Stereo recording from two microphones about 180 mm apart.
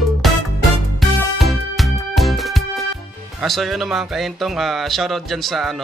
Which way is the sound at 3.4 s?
Centre (ahead or behind).